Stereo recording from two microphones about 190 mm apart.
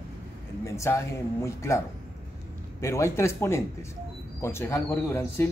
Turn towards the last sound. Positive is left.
turn(degrees=10)  # may be behind; listen again after turning